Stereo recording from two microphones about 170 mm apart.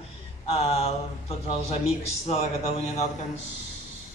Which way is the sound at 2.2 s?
35° left (ahead or behind).